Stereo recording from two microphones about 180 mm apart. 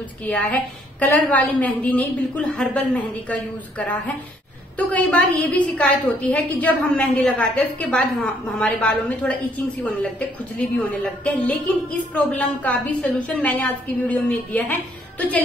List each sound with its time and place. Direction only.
0.2 s a woman's voice: 10° left (ahead or behind)